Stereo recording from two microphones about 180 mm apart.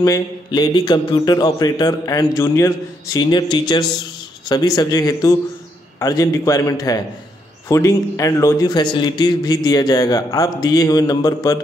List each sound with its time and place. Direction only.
0.0 s a man's voice: 20° left (ahead or behind)